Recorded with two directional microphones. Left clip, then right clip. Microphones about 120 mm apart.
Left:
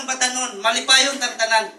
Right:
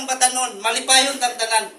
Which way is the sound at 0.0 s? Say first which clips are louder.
Right 2 dB; 15° right (ahead or behind).